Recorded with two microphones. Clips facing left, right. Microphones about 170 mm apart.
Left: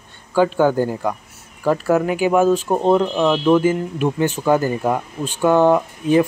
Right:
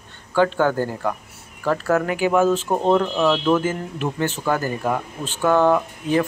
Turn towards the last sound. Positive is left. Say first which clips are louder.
# left 4 dB
turn(degrees=20)  # may be behind; listen again after turning